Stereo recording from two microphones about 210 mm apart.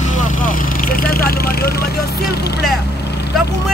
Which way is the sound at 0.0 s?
35° left (ahead or behind).